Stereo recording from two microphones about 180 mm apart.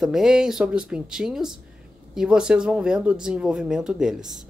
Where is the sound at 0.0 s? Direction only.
5° right (ahead or behind).